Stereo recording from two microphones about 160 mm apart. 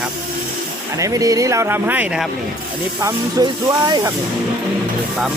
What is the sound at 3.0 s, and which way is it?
Speech, 25° right (ahead or behind).